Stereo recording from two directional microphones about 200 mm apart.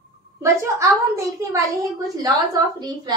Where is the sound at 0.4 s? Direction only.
15° right (ahead or behind).